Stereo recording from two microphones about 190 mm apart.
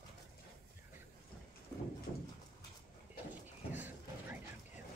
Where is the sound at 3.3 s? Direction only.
10° right (ahead or behind).